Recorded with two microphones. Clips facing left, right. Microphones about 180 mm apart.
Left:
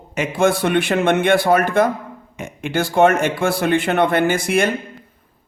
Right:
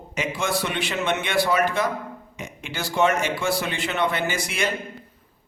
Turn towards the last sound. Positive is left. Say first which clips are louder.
# left 9 dB
turn(degrees=55)  # may be behind; listen again after turning